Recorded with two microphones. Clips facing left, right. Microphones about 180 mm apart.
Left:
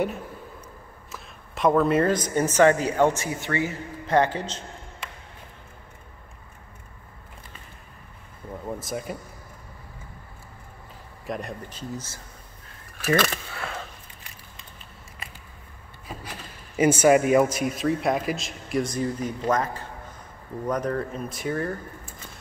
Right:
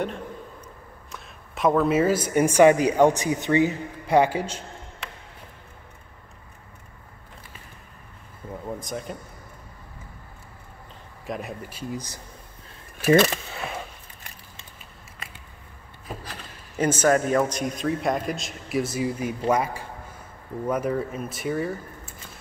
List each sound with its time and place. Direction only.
1.1 s speech: centre (ahead or behind)
8.6 s speech: 5° left (ahead or behind)
11.2 s speech: 5° right (ahead or behind)
13.0 s speech: 25° right (ahead or behind)
16.3 s speech: 10° left (ahead or behind)